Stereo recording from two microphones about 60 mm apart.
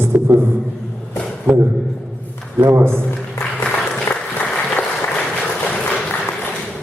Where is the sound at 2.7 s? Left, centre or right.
Right.